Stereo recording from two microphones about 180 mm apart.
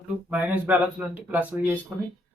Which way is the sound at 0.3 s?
10° right (ahead or behind).